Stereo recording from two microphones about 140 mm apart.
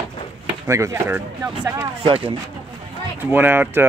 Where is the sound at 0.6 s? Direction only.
20° right (ahead or behind).